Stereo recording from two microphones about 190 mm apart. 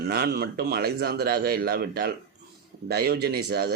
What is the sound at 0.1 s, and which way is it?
Speech, 55° right (ahead or behind).